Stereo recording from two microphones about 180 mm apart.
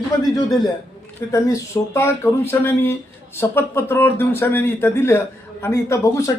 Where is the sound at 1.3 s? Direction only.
20° left (ahead or behind).